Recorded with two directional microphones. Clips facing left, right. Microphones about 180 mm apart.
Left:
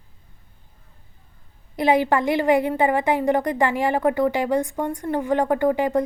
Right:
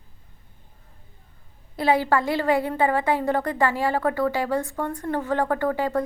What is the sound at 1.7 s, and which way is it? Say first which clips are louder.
A woman's voice: left 2 dB; 15° left (ahead or behind).